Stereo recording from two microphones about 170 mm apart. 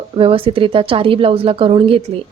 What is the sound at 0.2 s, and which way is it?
Speech, 30° right (ahead or behind).